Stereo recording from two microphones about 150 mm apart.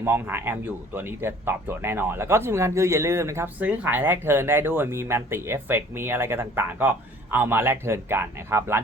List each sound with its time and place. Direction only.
0.0 s speech: 15° right (ahead or behind)